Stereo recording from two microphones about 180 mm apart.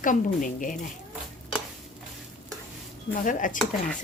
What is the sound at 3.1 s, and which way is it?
Speech, 45° left (ahead or behind).